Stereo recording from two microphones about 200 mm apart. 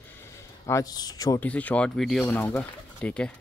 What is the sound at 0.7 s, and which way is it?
Speech, 15° left (ahead or behind).